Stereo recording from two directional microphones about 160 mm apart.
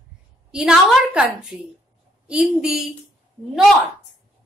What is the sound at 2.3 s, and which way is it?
Speech, 5° right (ahead or behind).